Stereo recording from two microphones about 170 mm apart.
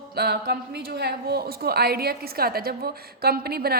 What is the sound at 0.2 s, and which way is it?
A woman's voice, 65° right (ahead or behind).